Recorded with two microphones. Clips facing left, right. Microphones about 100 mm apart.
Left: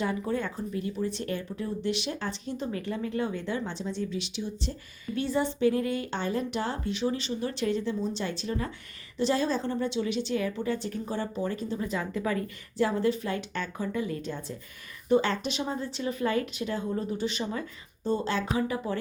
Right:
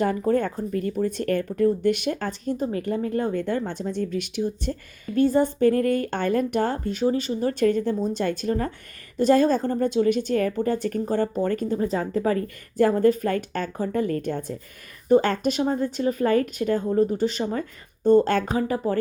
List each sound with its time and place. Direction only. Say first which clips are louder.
0.0 s speech: right 8 dB; 50° right (ahead or behind)
18.4 s speech: right 5 dB; 40° right (ahead or behind)